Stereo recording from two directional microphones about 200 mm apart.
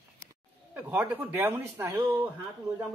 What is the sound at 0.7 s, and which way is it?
Speech, 10° right (ahead or behind).